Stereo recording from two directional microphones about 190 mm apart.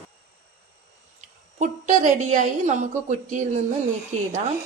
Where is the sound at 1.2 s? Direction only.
40° right (ahead or behind).